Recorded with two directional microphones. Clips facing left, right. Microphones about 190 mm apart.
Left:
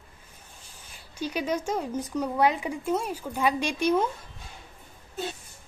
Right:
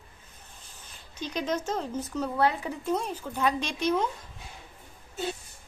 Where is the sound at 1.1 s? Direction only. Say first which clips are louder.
Left 2 dB; 10° left (ahead or behind).